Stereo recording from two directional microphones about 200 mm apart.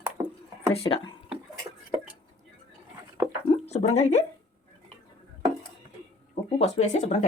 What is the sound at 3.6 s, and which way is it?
Speech, 35° left (ahead or behind).